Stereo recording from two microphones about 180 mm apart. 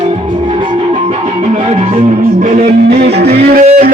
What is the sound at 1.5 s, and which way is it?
Music, 35° right (ahead or behind).